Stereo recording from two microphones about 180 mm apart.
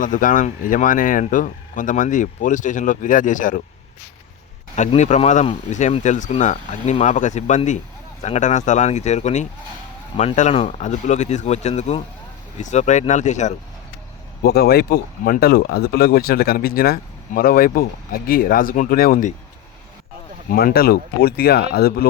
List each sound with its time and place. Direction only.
0.0 s speech: 45° left (ahead or behind)
4.7 s speech: 40° left (ahead or behind)
14.4 s speech: 60° left (ahead or behind)
20.5 s speech: 55° left (ahead or behind)